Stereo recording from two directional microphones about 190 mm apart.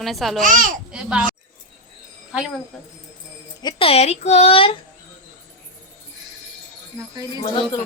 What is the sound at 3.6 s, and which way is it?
Speech, 25° left (ahead or behind).